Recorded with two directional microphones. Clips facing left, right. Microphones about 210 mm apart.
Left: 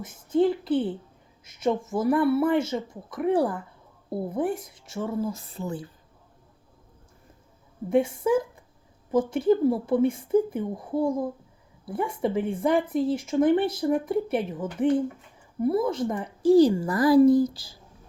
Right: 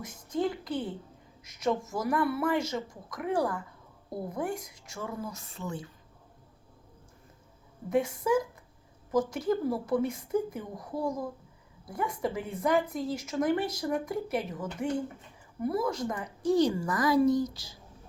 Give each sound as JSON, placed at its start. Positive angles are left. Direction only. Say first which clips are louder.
{"t": 0.0, "sound": "a sound", "louder": "left 9 dB", "side_deg": 30}
{"t": 0.7, "sound": "a woman's voice", "louder": "left 8 dB", "side_deg": 30}
{"t": 7.9, "sound": "a woman's voice", "louder": "left 5 dB", "side_deg": 30}